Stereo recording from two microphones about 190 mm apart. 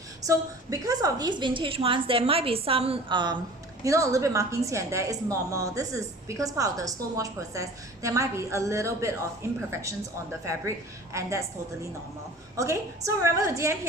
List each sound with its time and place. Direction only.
0.2 s a woman's voice: 20° right (ahead or behind)
11.1 s a woman's voice: 15° right (ahead or behind)
12.5 s a woman's voice: 15° right (ahead or behind)